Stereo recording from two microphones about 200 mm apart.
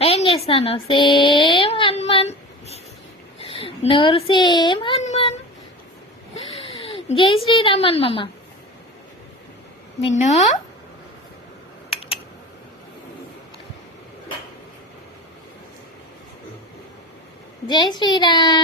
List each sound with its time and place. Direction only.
0.0 s a sound: 30° left (ahead or behind)
3.3 s a child's voice: 30° left (ahead or behind)
6.7 s speech: 25° left (ahead or behind)
10.0 s a woman's voice: 35° left (ahead or behind)
11.9 s typing: 30° left (ahead or behind)
17.7 s a child's voice: 20° left (ahead or behind)